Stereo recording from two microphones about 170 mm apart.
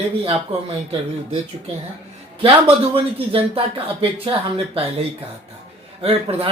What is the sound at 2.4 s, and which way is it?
Speech, 35° right (ahead or behind).